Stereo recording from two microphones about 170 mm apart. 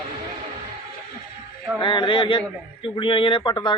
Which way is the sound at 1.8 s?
30° left (ahead or behind).